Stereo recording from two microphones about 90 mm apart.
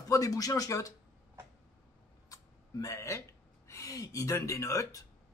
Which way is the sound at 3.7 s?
40° left (ahead or behind).